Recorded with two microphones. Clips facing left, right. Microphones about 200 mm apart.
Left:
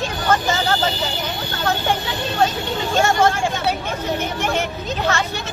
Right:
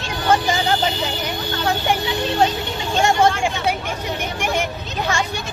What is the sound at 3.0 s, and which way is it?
Speech, 15° right (ahead or behind).